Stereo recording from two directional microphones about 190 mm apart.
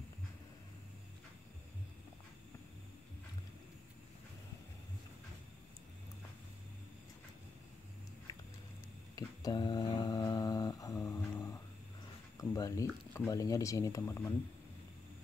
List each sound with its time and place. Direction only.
9.1 s mantra: 20° left (ahead or behind)
12.4 s speech: 20° left (ahead or behind)